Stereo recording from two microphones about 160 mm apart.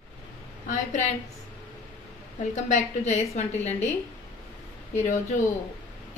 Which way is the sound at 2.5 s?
50° left (ahead or behind).